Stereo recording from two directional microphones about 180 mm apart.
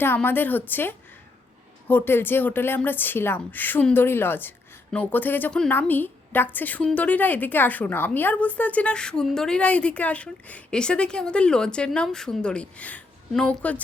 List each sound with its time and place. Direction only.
0.0 s speech: 10° left (ahead or behind)